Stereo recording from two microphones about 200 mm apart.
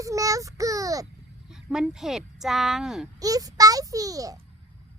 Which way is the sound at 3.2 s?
20° right (ahead or behind).